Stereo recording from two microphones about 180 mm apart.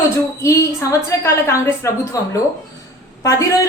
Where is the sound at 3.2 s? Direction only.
15° left (ahead or behind).